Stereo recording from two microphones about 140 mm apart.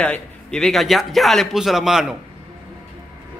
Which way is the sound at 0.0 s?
5° left (ahead or behind).